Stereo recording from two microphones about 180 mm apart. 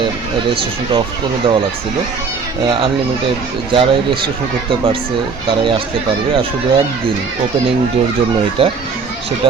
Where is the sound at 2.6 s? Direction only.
25° right (ahead or behind).